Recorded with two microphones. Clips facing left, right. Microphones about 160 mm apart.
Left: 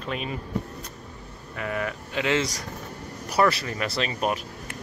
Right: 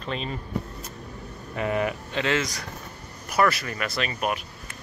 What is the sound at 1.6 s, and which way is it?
Speech, 25° right (ahead or behind).